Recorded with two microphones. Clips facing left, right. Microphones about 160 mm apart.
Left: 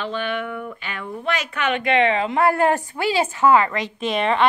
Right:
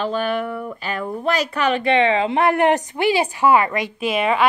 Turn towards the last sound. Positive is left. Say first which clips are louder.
# right 1 dB
turn(degrees=-5)  # may be behind; listen again after turning